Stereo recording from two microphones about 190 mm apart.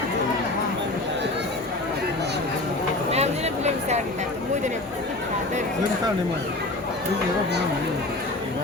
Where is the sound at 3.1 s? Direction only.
35° right (ahead or behind).